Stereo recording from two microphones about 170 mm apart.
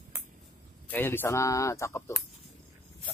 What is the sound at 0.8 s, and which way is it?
Speech, 10° left (ahead or behind).